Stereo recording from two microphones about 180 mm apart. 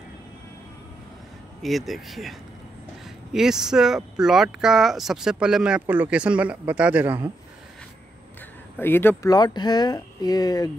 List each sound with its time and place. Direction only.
1.6 s speech: centre (ahead or behind)
3.3 s speech: 5° right (ahead or behind)
8.7 s speech: 10° left (ahead or behind)